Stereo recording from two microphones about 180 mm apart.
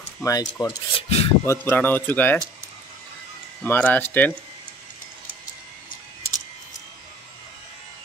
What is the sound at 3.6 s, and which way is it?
Speech, 10° left (ahead or behind).